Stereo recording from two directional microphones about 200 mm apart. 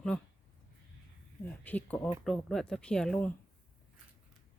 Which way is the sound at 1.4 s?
10° left (ahead or behind).